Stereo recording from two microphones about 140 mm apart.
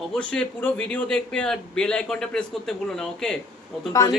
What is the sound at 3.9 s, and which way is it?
Speech, 25° left (ahead or behind).